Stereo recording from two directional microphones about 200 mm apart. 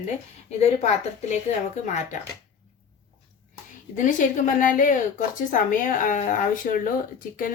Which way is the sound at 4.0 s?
40° left (ahead or behind).